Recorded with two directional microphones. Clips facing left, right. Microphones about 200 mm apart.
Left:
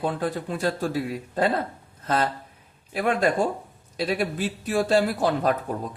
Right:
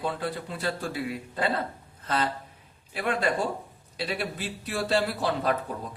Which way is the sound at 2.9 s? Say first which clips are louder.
Left 5 dB; 45° left (ahead or behind).